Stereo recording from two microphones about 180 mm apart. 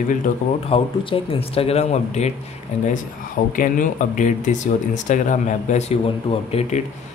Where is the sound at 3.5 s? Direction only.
50° left (ahead or behind).